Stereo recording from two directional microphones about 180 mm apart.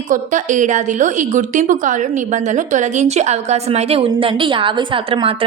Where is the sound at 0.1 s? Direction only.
45° right (ahead or behind).